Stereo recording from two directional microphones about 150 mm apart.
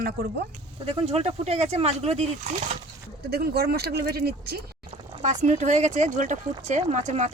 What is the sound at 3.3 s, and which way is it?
Speech, 90° right.